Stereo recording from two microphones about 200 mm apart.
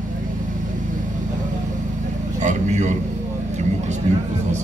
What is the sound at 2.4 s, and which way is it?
Speech, 35° right (ahead or behind).